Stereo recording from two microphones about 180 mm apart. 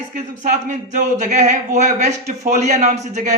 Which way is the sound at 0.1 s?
45° right (ahead or behind).